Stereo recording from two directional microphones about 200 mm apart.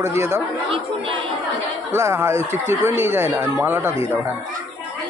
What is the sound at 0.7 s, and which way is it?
Speech, 25° right (ahead or behind).